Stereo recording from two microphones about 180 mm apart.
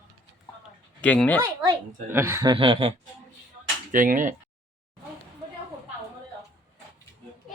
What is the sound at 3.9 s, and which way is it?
Speech, 50° right (ahead or behind).